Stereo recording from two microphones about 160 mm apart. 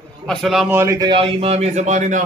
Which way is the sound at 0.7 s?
20° right (ahead or behind).